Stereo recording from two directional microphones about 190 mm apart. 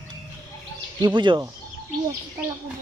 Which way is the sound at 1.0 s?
25° right (ahead or behind).